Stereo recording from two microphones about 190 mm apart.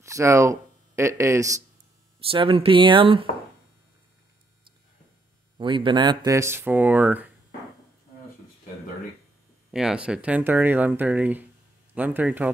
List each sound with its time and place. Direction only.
0.0 s speech: 15° right (ahead or behind)
2.1 s speech: 30° right (ahead or behind)
5.6 s speech: 25° right (ahead or behind); by 7.3 s 10° right (ahead or behind)
9.7 s speech: 5° right (ahead or behind)